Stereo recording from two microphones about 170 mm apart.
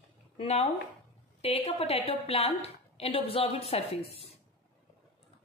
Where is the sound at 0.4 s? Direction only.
40° left (ahead or behind).